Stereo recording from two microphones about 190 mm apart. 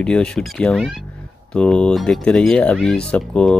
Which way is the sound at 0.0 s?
5° left (ahead or behind).